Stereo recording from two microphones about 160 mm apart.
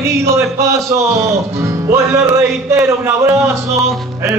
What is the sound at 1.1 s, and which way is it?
Music, 20° right (ahead or behind).